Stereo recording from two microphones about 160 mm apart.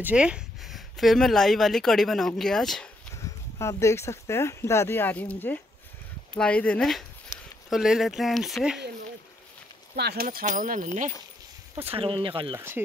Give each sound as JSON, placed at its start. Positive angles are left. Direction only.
{"t": 0.0, "sound": "speech", "side_deg": -5}
{"t": 3.2, "sound": "speech", "side_deg": 20}
{"t": 7.3, "sound": "a sound", "side_deg": 20}
{"t": 7.7, "sound": "speech", "side_deg": 0}
{"t": 9.9, "sound": "speech", "side_deg": -80}
{"t": 11.8, "sound": "speech", "side_deg": -35}
{"t": 12.5, "sound": "speech", "side_deg": -15}